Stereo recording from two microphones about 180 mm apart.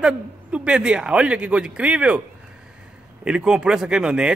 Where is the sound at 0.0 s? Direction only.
5° right (ahead or behind).